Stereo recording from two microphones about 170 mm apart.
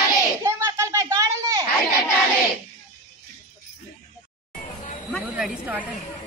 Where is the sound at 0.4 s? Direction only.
15° right (ahead or behind).